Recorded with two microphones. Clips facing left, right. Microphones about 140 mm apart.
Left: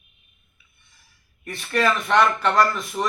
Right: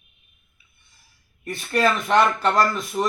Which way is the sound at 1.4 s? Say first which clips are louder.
Right 1 dB; 35° right (ahead or behind).